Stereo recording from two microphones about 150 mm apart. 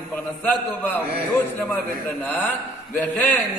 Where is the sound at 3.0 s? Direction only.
10° left (ahead or behind).